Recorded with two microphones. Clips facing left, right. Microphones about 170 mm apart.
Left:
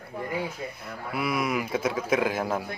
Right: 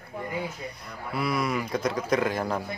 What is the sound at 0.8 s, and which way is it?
Speech, 5° left (ahead or behind).